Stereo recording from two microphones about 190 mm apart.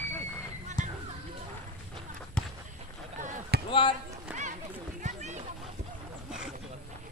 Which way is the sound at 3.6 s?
25° left (ahead or behind).